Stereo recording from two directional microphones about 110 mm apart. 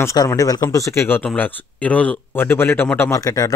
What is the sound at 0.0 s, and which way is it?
Speech, 30° left (ahead or behind).